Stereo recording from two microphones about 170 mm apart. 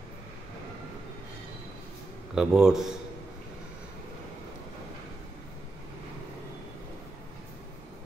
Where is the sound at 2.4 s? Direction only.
5° right (ahead or behind).